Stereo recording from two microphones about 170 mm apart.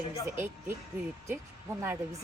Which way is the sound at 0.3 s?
10° right (ahead or behind).